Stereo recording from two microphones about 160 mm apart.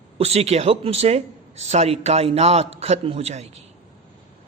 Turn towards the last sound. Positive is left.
turn(degrees=-40)  # may be behind; listen again after turning